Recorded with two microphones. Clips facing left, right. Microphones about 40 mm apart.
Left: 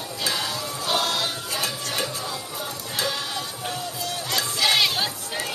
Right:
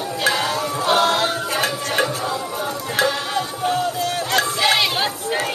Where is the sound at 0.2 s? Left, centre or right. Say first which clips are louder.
Right 7 dB; right.